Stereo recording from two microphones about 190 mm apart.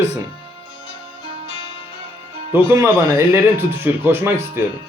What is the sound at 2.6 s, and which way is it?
Speech, 15° right (ahead or behind).